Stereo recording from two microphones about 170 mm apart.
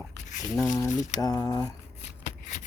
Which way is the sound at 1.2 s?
20° left (ahead or behind).